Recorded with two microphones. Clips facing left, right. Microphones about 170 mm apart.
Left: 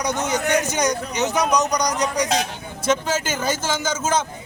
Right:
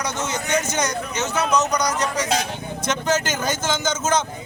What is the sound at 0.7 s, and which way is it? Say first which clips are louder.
A man's voice: left 2 dB; 15° left (ahead or behind).